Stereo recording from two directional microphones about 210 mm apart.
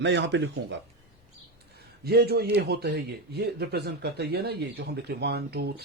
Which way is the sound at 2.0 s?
50° right (ahead or behind).